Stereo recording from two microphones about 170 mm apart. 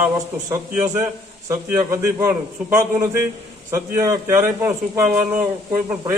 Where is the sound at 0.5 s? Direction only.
10° right (ahead or behind).